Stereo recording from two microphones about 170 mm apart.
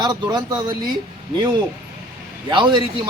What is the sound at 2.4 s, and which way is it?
Speech, 25° right (ahead or behind).